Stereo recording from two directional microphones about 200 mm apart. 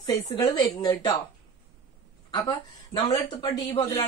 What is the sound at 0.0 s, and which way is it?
A woman's voice, 20° left (ahead or behind).